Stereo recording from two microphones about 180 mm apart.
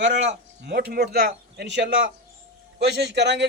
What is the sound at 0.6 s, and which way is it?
A man's voice, 65° right (ahead or behind).